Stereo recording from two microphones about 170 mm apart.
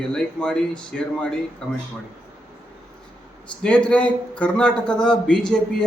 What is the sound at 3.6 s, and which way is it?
A man's voice, 5° left (ahead or behind).